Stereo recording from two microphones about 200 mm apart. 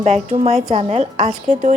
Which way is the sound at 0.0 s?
35° right (ahead or behind).